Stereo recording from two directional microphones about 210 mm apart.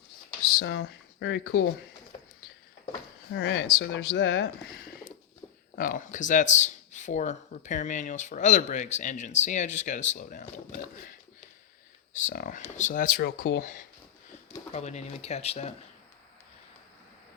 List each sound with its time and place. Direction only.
0.4 s speech: 50° left (ahead or behind)
3.3 s speech: 60° left (ahead or behind)
5.7 s speech: 40° left (ahead or behind)
12.1 s speech: 40° left (ahead or behind)